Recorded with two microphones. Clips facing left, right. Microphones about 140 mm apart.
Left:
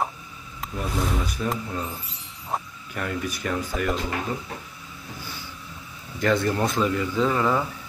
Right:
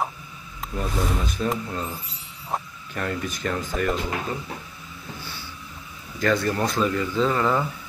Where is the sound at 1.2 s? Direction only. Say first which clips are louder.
Right 2 dB; 10° left (ahead or behind).